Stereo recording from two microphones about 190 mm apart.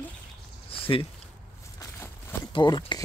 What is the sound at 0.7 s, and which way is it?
Speech, 30° left (ahead or behind).